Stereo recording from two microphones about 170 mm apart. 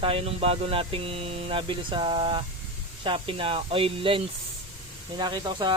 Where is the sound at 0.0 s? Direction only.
35° right (ahead or behind).